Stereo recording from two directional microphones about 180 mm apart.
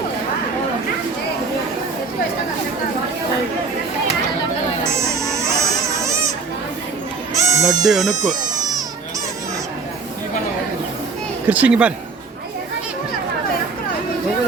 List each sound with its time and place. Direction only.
4.9 s a sound: 15° right (ahead or behind)
7.3 s bleat: 15° right (ahead or behind)
7.9 s speech: centre (ahead or behind)
11.4 s speech: 10° right (ahead or behind)